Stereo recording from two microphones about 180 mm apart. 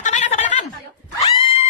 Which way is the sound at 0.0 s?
40° left (ahead or behind).